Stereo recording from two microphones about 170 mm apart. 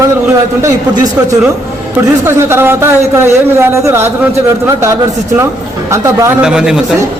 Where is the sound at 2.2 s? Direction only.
15° right (ahead or behind).